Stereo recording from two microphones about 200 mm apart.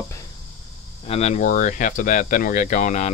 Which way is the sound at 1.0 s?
30° left (ahead or behind).